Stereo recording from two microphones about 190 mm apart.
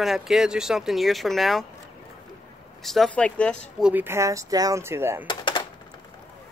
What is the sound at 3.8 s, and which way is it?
Speech, 10° right (ahead or behind).